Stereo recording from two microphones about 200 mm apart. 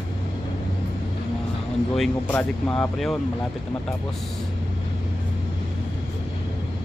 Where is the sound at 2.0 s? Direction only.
5° left (ahead or behind).